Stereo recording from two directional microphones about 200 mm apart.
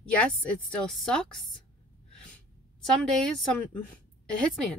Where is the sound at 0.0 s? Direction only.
5° left (ahead or behind).